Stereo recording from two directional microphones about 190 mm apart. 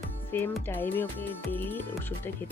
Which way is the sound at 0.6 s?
10° left (ahead or behind).